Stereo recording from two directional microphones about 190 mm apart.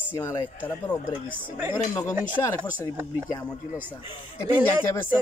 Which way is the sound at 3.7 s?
10° right (ahead or behind).